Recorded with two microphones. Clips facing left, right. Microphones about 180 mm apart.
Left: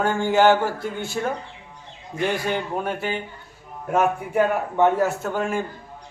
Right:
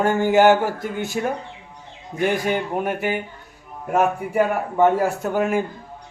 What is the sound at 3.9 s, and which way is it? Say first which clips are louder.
A man's voice: right 1 dB; 5° right (ahead or behind).